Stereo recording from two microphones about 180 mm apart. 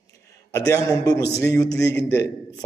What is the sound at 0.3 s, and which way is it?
A man's voice, 15° left (ahead or behind).